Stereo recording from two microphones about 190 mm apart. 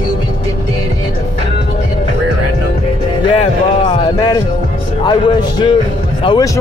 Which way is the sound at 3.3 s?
25° left (ahead or behind).